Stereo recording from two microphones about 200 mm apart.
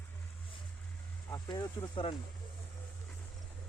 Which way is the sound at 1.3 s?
15° left (ahead or behind).